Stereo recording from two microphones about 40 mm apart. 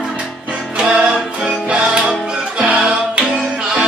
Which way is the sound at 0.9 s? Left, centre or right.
Right.